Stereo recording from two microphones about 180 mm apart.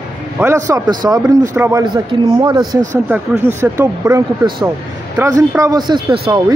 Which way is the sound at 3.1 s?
10° right (ahead or behind).